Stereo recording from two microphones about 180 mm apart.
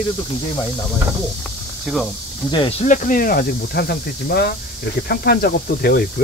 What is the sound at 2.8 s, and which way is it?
Speech, 45° left (ahead or behind).